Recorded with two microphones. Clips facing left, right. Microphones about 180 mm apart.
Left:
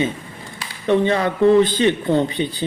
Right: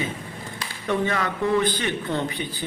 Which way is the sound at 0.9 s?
25° left (ahead or behind).